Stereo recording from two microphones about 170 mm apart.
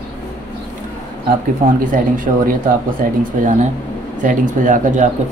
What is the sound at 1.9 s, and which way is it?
Speech, 50° right (ahead or behind).